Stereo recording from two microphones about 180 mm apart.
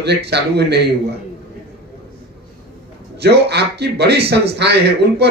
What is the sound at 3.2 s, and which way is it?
A man's voice, 65° right (ahead or behind).